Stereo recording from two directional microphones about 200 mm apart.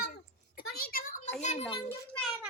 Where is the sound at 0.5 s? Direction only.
45° left (ahead or behind).